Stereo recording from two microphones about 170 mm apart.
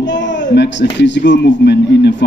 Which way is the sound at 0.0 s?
90° left.